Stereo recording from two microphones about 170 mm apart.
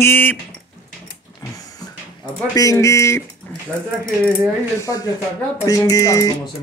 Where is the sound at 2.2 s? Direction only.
20° left (ahead or behind).